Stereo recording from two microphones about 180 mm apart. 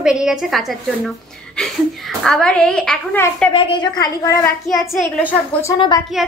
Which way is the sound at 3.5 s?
30° left (ahead or behind).